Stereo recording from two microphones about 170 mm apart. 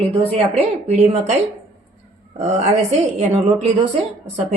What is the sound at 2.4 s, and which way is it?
A woman's voice, 40° right (ahead or behind).